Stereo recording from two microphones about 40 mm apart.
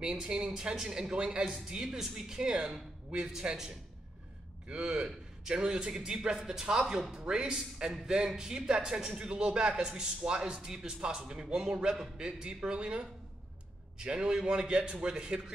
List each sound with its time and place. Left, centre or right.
0.0 s speech: right